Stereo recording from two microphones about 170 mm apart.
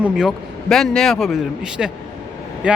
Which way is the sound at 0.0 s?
Centre (ahead or behind).